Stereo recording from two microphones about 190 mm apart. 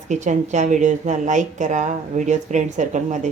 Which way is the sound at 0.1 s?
40° right (ahead or behind).